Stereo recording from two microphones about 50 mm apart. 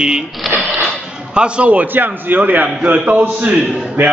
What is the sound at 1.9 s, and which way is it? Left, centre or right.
A man's voice, right.